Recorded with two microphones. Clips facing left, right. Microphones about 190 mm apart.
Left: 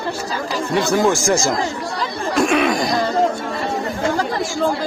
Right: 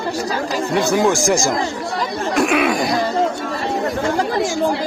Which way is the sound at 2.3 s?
10° right (ahead or behind).